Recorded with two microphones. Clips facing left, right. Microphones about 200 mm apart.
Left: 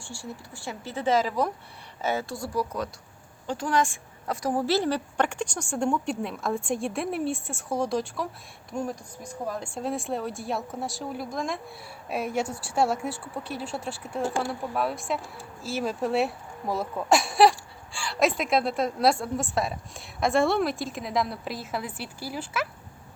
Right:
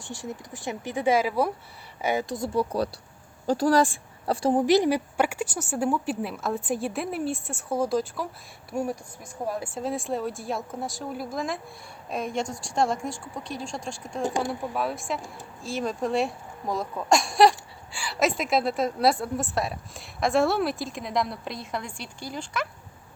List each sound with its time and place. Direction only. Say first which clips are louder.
0.0 s a woman's voice: right 3 dB; 20° right (ahead or behind); by 11.6 s 5° right (ahead or behind)
12.1 s a woman's voice: left 1 dB; 5° left (ahead or behind)
14.3 s speech: right 2 dB; 15° right (ahead or behind)
14.8 s a woman's voice: left 3 dB; centre (ahead or behind)